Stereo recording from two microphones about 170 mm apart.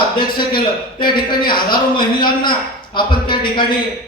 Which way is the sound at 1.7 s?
25° left (ahead or behind).